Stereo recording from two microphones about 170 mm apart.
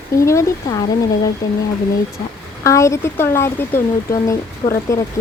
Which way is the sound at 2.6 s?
15° left (ahead or behind).